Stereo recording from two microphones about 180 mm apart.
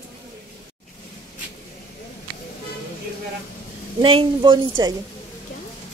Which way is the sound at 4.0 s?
30° right (ahead or behind).